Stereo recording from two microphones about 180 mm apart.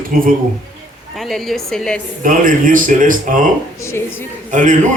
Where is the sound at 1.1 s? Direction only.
Centre (ahead or behind).